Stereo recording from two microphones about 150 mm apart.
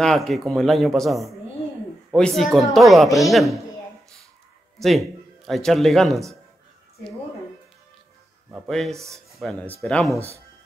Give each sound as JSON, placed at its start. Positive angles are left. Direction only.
{"t": 0.0, "sound": "speech", "side_deg": 0}
{"t": 4.7, "sound": "a man's voice", "side_deg": 0}
{"t": 8.6, "sound": "speech", "side_deg": 0}
{"t": 8.9, "sound": "speech", "side_deg": -20}
{"t": 9.3, "sound": "speech", "side_deg": 0}